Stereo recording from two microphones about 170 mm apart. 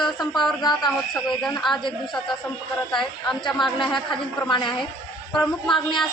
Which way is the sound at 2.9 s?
5° left (ahead or behind).